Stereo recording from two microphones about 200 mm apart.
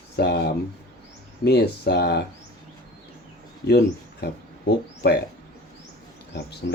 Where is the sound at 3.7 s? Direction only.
55° left (ahead or behind).